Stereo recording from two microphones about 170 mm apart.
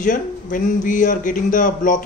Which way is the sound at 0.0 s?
50° left (ahead or behind).